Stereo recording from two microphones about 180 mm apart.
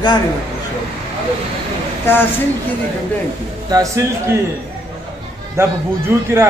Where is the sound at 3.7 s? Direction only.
15° right (ahead or behind).